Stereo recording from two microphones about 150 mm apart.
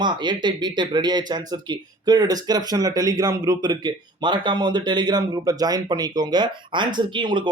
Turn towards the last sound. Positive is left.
turn(degrees=-30)  # may be behind; listen again after turning